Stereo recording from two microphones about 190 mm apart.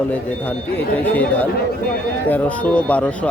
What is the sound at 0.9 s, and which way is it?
A man's voice, 10° left (ahead or behind).